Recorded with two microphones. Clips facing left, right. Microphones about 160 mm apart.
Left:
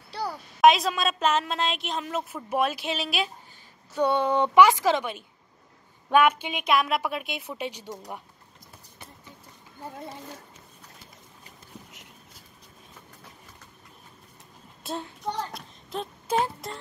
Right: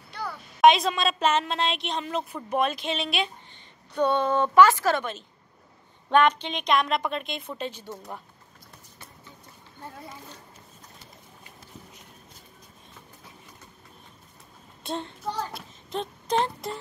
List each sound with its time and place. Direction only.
0.1 s a sound: 35° left (ahead or behind)
0.6 s a woman's voice: centre (ahead or behind)
14.8 s speech: 5° left (ahead or behind)